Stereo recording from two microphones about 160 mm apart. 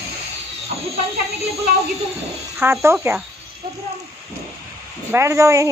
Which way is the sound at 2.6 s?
15° right (ahead or behind).